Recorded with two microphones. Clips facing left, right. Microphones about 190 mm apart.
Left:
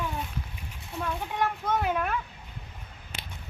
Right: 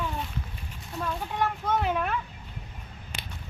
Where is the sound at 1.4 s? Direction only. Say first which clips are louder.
Right 1 dB; 5° left (ahead or behind).